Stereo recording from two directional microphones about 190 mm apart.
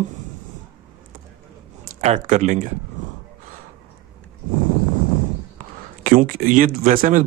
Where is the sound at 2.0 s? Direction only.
35° right (ahead or behind).